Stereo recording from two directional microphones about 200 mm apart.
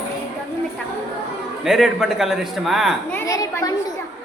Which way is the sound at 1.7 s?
Centre (ahead or behind).